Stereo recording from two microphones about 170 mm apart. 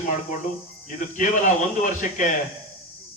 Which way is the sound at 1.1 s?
50° left (ahead or behind).